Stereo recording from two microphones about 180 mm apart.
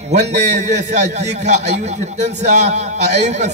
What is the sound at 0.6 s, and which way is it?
A man's voice, 40° right (ahead or behind).